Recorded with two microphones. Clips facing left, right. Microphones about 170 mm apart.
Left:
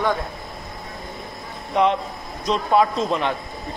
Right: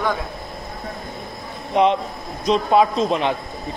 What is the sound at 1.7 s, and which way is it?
Speech, 20° right (ahead or behind).